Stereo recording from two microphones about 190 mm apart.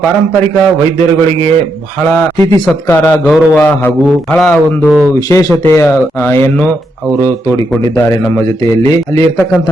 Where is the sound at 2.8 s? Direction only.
5° left (ahead or behind).